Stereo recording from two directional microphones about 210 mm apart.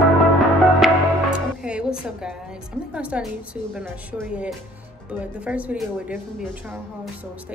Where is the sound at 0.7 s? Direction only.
Centre (ahead or behind).